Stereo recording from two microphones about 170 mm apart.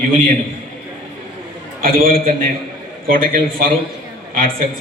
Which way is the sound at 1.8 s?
55° right (ahead or behind).